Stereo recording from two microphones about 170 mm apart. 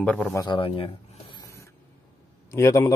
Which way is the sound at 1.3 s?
20° left (ahead or behind).